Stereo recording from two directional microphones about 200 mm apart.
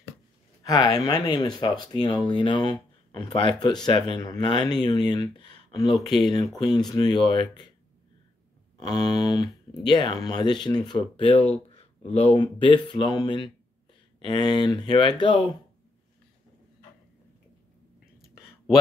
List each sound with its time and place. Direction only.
0.7 s speech: 20° left (ahead or behind)
8.8 s speech: 20° left (ahead or behind)